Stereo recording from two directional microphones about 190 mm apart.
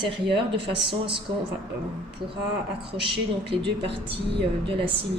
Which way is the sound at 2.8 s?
25° right (ahead or behind).